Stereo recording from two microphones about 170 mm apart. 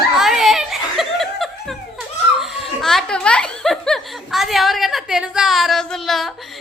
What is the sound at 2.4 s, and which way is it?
Children playing, centre (ahead or behind).